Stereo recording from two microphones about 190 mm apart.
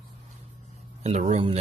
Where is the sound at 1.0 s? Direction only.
35° right (ahead or behind).